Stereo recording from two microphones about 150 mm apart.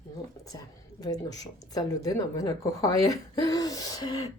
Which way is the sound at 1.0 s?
25° left (ahead or behind).